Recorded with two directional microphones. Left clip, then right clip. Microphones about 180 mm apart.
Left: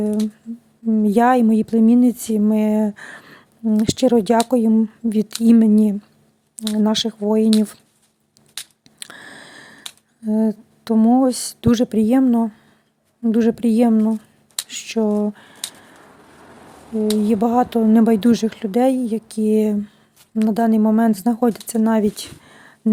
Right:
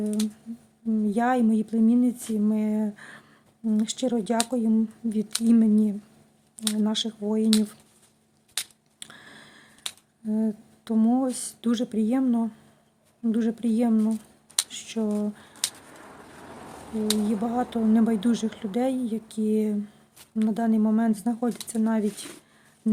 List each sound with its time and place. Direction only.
0.9 s speech: 45° left (ahead or behind)
9.0 s a sound: 45° left (ahead or behind)
10.2 s a woman's voice: 45° left (ahead or behind)
17.2 s speech: 45° left (ahead or behind)